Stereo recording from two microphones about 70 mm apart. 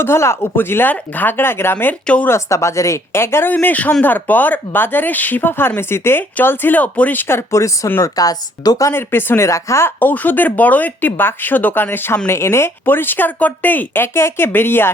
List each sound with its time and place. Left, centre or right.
0.0 s speech: left
2.2 s speech: left
3.5 s speech: left
8.0 s speech: left
8.9 s speech: left
10.0 s speech: left